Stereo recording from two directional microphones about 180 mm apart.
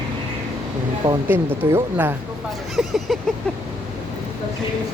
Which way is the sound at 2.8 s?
Centre (ahead or behind).